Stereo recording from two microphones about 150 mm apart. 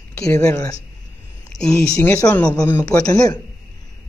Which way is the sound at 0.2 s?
5° left (ahead or behind).